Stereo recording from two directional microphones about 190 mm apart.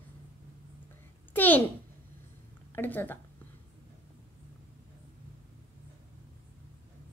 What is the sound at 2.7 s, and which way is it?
Speech, 10° left (ahead or behind).